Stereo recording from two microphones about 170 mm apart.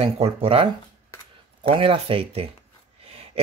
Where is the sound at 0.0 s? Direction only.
35° right (ahead or behind).